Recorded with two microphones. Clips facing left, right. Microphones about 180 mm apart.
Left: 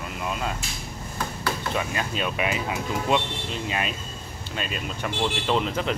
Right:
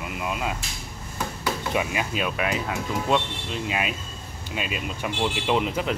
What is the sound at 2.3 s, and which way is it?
Speech, 5° left (ahead or behind).